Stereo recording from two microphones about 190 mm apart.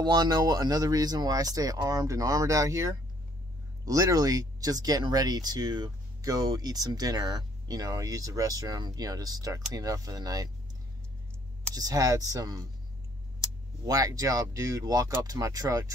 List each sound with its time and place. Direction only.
0.0 s speech: 20° right (ahead or behind)
11.7 s speech: 20° right (ahead or behind)
13.8 s speech: 20° right (ahead or behind)